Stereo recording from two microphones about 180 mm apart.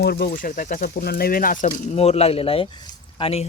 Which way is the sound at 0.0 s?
65° left (ahead or behind).